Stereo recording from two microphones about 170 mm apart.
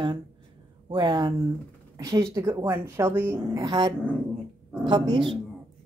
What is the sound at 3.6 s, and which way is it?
Speech, 25° right (ahead or behind).